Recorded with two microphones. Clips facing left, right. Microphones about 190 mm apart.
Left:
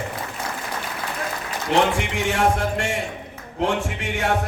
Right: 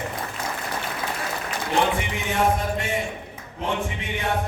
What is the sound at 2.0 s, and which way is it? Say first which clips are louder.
Speech: left 2 dB; 75° left (ahead or behind).